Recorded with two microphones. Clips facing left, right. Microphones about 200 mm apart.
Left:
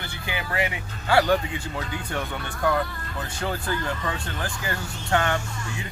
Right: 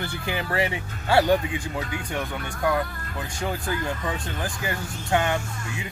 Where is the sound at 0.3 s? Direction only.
35° right (ahead or behind).